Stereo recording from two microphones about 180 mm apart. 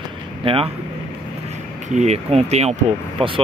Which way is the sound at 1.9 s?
35° right (ahead or behind).